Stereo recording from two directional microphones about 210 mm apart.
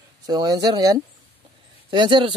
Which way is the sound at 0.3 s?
20° right (ahead or behind).